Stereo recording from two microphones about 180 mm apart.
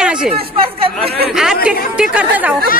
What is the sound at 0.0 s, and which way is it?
Chatter, 5° right (ahead or behind).